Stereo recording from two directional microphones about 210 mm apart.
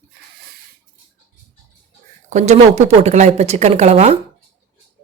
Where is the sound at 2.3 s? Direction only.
30° right (ahead or behind).